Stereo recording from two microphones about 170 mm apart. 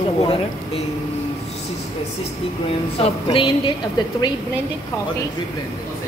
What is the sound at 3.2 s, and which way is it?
Speech, 30° left (ahead or behind).